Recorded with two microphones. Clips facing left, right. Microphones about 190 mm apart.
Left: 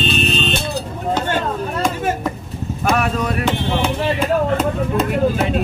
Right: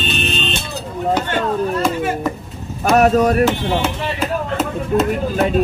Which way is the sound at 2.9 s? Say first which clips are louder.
Right 10 dB; 40° right (ahead or behind).